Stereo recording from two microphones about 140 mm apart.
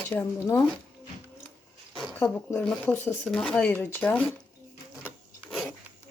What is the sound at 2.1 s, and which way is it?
Speech, 15° left (ahead or behind).